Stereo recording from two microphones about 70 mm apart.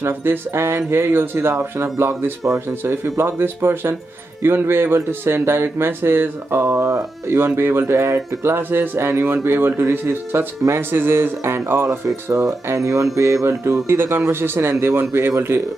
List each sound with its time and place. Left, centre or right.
0.0 s speech: right
1.5 s speech: right
6.7 s speech: right
7.3 s speech: right
8.5 s speech: right
13.8 s speech: right